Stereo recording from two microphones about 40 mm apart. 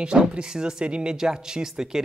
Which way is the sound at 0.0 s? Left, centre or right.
Right.